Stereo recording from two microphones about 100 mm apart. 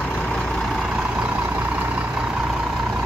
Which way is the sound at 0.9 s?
10° right (ahead or behind).